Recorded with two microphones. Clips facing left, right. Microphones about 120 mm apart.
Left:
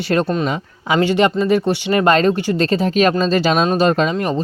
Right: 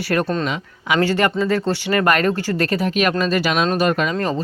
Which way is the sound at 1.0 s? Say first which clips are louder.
Left 3 dB; 20° left (ahead or behind).